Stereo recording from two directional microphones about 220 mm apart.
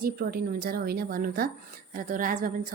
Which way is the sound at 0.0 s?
45° right (ahead or behind).